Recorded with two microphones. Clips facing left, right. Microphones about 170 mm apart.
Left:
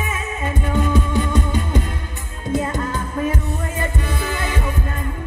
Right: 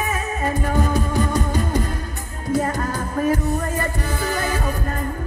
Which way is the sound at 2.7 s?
40° right (ahead or behind).